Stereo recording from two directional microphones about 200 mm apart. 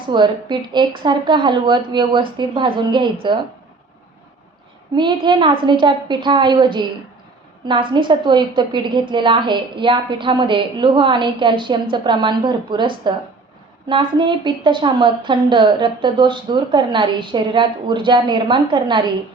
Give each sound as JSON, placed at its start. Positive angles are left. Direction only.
{"t": 0.1, "sound": "a woman's voice", "side_deg": -20}
{"t": 4.9, "sound": "a woman's voice", "side_deg": -25}